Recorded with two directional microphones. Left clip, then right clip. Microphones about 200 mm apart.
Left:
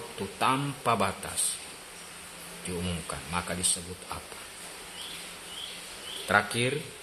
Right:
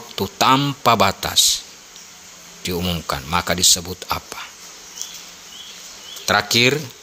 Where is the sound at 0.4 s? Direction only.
50° right (ahead or behind).